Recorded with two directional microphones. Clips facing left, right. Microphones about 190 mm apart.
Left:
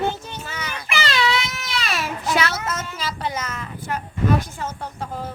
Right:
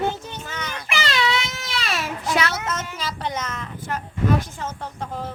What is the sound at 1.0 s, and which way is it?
Baby cry, 20° right (ahead or behind).